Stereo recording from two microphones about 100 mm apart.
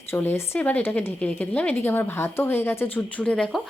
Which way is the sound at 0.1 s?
25° left (ahead or behind).